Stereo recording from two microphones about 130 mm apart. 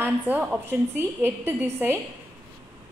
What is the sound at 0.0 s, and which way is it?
A woman's voice, 10° right (ahead or behind).